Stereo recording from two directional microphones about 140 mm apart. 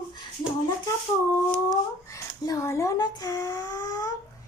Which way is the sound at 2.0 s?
20° left (ahead or behind).